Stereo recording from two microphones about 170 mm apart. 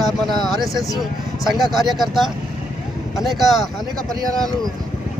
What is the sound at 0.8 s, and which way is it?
Speech, 20° left (ahead or behind).